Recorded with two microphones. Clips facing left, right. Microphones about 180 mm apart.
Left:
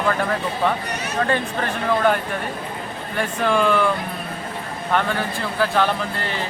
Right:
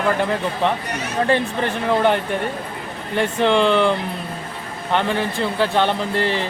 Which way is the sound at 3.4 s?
25° right (ahead or behind).